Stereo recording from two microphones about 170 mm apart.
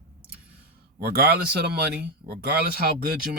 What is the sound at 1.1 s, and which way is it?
Speech, 65° right (ahead or behind).